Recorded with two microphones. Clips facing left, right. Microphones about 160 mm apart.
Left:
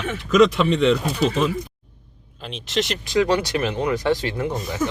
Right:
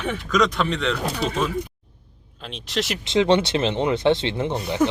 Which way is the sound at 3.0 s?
25° right (ahead or behind).